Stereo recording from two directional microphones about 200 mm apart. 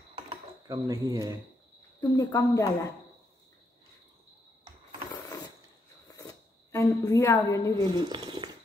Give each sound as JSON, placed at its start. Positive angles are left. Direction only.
{"t": 0.7, "sound": "speech", "side_deg": -15}
{"t": 2.0, "sound": "speech", "side_deg": 15}
{"t": 6.0, "sound": "zipper", "side_deg": 15}
{"t": 7.8, "sound": "speech", "side_deg": -20}